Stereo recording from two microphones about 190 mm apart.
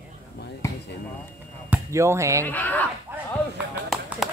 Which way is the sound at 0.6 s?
15° left (ahead or behind).